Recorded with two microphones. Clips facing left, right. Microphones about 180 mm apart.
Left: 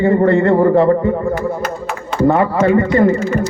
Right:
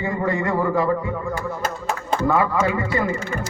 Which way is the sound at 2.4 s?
55° left (ahead or behind).